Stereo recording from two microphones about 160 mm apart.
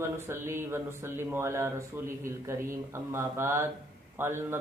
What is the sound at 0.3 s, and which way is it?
A man's voice, 15° right (ahead or behind).